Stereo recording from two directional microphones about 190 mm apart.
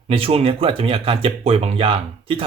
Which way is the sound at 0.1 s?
30° right (ahead or behind).